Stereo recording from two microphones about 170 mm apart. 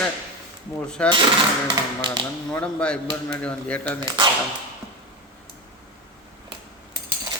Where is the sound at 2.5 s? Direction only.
5° left (ahead or behind).